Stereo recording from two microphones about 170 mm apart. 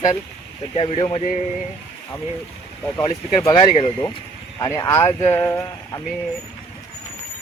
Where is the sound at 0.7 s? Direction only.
35° left (ahead or behind).